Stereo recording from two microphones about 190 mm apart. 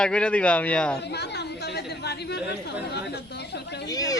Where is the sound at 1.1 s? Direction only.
60° left (ahead or behind).